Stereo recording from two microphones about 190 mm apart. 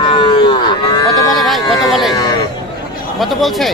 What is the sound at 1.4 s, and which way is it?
Speech, centre (ahead or behind).